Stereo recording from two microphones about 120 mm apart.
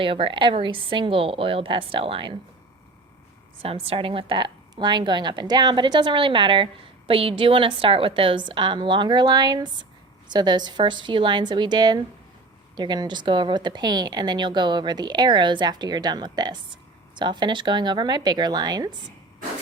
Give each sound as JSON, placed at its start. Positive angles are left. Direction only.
{"t": 0.0, "sound": "a woman's voice", "side_deg": -45}
{"t": 3.6, "sound": "a woman's voice", "side_deg": -55}